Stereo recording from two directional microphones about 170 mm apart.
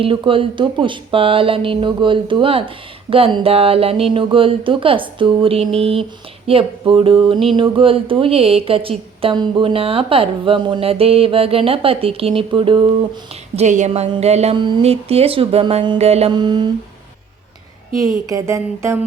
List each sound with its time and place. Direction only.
0.0 s speech: 30° right (ahead or behind)
13.6 s speech: 45° right (ahead or behind); by 16.0 s 25° right (ahead or behind)
16.0 s a sound: 40° right (ahead or behind)
18.3 s a woman's voice: 20° right (ahead or behind)